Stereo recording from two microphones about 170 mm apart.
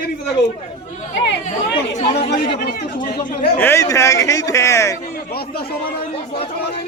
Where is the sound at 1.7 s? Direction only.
80° left.